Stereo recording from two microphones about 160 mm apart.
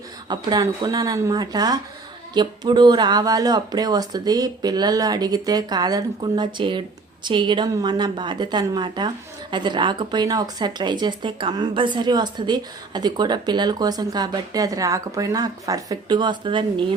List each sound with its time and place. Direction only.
0.3 s a woman's voice: 25° right (ahead or behind)